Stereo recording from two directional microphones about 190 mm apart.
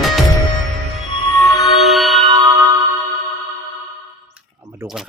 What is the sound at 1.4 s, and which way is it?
Music, 15° left (ahead or behind).